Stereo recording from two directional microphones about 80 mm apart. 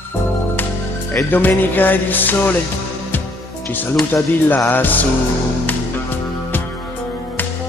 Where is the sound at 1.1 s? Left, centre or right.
Left.